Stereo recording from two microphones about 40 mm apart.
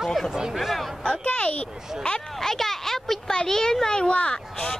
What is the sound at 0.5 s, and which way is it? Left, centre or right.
Speech, centre.